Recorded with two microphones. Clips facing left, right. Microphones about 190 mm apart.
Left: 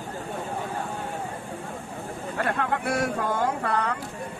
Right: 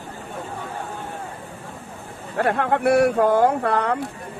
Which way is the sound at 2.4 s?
60° right (ahead or behind).